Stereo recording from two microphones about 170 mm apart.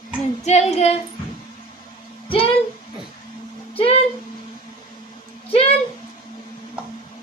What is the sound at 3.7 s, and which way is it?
Speech, 35° left (ahead or behind).